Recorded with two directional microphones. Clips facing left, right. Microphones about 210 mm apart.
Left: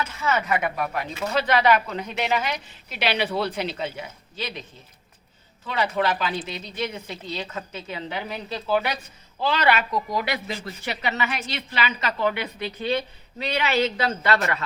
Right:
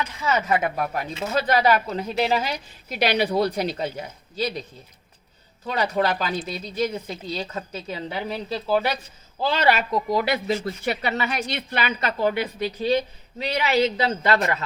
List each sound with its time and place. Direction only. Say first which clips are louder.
0.4 s speech: right 2 dB; 35° right (ahead or behind)
5.6 s speech: right 1 dB; 40° right (ahead or behind)
10.5 s a woman's voice: right 7 dB; 50° right (ahead or behind)
13.7 s a woman's voice: right 3 dB; 20° right (ahead or behind)